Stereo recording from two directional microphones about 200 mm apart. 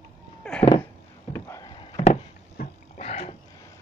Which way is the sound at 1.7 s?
25° left (ahead or behind).